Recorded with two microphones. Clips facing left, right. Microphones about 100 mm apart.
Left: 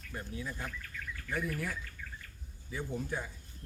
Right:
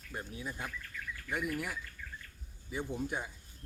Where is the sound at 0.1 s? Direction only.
20° right (ahead or behind).